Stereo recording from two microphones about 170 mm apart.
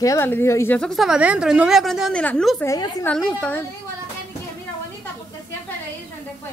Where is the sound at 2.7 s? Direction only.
20° left (ahead or behind).